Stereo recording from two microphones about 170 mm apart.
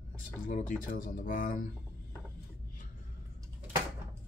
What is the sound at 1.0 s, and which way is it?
Speech, 55° left (ahead or behind).